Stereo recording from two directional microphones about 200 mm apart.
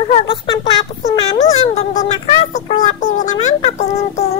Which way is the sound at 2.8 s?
40° left (ahead or behind).